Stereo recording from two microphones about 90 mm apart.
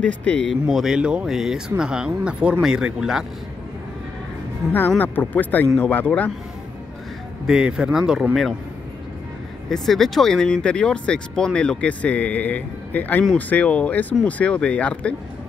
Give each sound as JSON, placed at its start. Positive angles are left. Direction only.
{"t": 0.0, "sound": "speech", "side_deg": 15}
{"t": 0.7, "sound": "speech", "side_deg": -5}
{"t": 4.7, "sound": "speech", "side_deg": 20}
{"t": 7.4, "sound": "speech", "side_deg": -10}
{"t": 9.7, "sound": "speech", "side_deg": 5}